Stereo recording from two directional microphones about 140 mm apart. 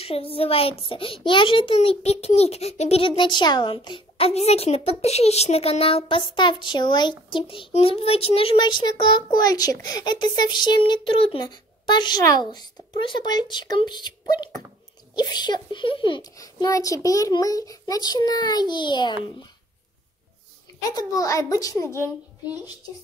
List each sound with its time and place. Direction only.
0.0 s a child's voice: 45° left (ahead or behind)
4.3 s a child's voice: 50° left (ahead or behind); by 14.1 s 30° left (ahead or behind)
15.1 s a child's voice: 30° left (ahead or behind)
20.9 s a child's voice: 25° left (ahead or behind)